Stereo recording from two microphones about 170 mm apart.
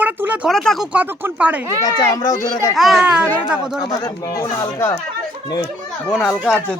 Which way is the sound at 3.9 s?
20° left (ahead or behind).